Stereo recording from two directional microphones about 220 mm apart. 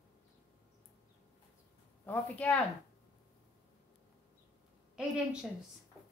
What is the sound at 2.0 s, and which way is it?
Speech, 5° left (ahead or behind).